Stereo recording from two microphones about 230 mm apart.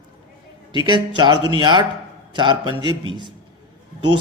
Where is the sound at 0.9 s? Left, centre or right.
Centre.